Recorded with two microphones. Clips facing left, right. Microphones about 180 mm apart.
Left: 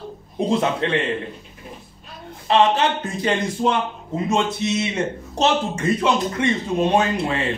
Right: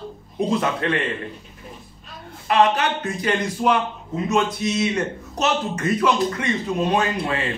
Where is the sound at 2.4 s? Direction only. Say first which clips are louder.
Left 1 dB; 25° left (ahead or behind).